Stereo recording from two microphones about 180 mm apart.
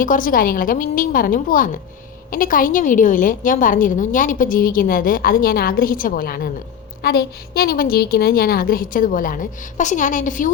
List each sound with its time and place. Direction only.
0.0 s a woman's voice: 50° left (ahead or behind)